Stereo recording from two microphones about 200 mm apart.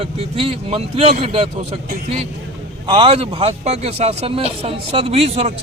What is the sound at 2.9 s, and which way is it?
A man's voice, 25° right (ahead or behind).